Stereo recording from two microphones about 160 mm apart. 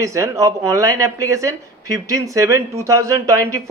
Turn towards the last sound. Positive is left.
turn(degrees=-20)  # may be behind; listen again after turning